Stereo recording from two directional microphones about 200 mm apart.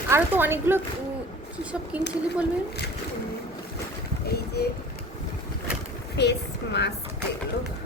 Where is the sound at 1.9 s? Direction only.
5° right (ahead or behind).